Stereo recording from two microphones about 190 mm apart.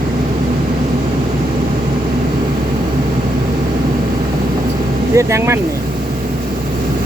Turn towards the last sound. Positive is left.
turn(degrees=-15)  # may be behind; listen again after turning